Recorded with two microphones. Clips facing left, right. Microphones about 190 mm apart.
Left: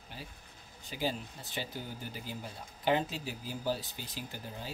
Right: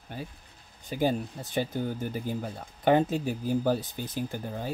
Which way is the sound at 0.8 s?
50° right (ahead or behind).